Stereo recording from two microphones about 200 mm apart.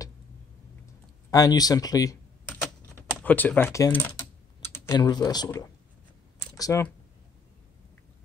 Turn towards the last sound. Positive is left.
turn(degrees=15)  # may be behind; listen again after turning